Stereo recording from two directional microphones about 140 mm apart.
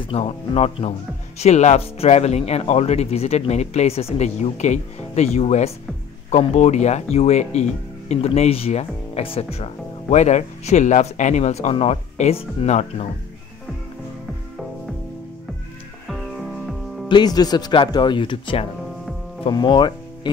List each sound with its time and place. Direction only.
0.0 s speech: 45° left (ahead or behind)
16.1 s music: centre (ahead or behind)
17.1 s speech: 30° left (ahead or behind)